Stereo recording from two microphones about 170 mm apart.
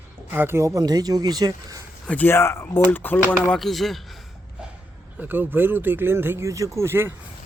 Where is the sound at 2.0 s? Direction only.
10° left (ahead or behind).